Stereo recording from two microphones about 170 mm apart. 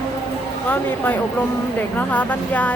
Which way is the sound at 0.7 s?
10° left (ahead or behind).